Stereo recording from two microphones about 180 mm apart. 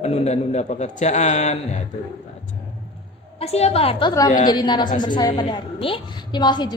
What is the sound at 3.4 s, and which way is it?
A man's voice, 35° left (ahead or behind).